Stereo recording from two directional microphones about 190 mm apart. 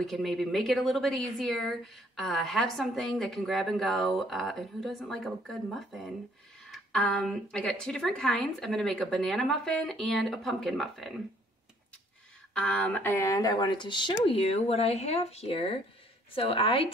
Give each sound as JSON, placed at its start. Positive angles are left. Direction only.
{"t": 0.0, "sound": "a woman's voice", "side_deg": 0}
{"t": 12.5, "sound": "speech", "side_deg": 5}